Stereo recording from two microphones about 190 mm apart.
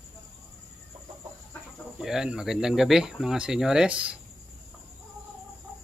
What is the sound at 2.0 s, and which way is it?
Speech, 5° right (ahead or behind).